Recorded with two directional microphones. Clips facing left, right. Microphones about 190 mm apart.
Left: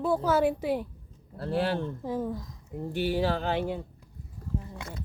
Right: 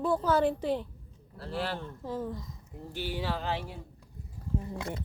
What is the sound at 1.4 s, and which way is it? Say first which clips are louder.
Speech: left 7 dB; 50° left (ahead or behind).